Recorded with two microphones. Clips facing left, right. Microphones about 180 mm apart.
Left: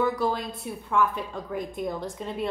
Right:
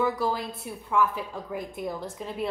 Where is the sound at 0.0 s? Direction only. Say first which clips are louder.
Left 1 dB; 5° right (ahead or behind).